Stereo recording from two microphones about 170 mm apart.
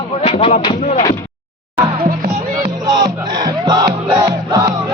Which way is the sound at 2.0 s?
60° right (ahead or behind).